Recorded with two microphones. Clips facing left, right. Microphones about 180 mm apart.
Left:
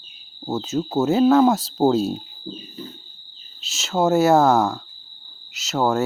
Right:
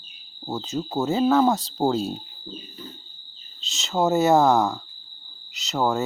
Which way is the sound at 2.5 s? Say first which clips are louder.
Left 4 dB; 35° left (ahead or behind).